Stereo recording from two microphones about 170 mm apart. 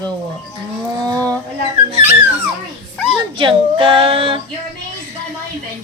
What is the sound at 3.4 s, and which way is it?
Female singing, 30° right (ahead or behind).